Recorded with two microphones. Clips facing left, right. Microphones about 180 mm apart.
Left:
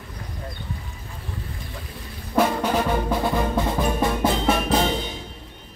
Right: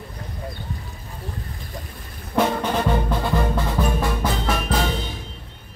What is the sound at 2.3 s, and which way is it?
Music, 5° left (ahead or behind).